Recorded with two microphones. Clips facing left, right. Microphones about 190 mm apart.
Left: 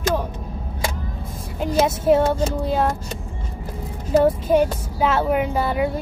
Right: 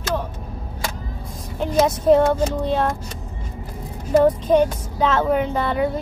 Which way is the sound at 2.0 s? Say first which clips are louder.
Right 2 dB; 5° left (ahead or behind).